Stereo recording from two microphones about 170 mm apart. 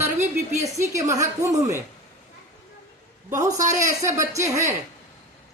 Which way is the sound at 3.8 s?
15° right (ahead or behind).